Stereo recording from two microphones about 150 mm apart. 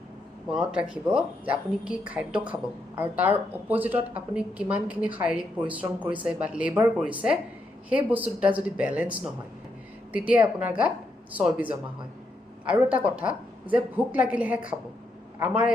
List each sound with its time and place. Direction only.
0.4 s a woman's voice: 5° right (ahead or behind)